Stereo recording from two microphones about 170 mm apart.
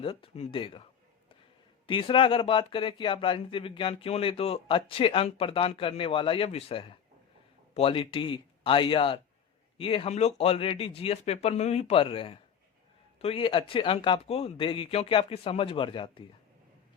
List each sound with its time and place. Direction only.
0.0 s speech: 30° left (ahead or behind)
1.9 s speech: 30° left (ahead or behind)